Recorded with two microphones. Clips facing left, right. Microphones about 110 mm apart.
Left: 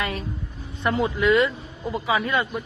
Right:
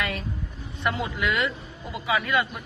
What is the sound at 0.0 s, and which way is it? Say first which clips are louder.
Speech: left 2 dB; 35° left (ahead or behind).